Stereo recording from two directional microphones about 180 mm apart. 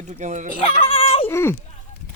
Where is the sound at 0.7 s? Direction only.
30° left (ahead or behind).